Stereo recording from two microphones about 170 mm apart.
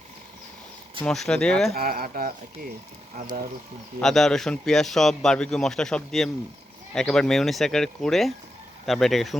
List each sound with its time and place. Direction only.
1.0 s speech: 5° left (ahead or behind)
1.7 s speech: 60° right (ahead or behind)
4.0 s speech: 5° left (ahead or behind)